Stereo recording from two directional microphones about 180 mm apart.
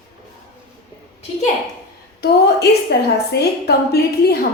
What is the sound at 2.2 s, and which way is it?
A woman's voice, 65° left (ahead or behind).